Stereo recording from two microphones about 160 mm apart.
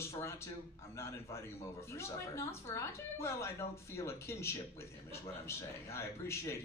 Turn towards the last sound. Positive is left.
turn(degrees=15)  # may be behind; listen again after turning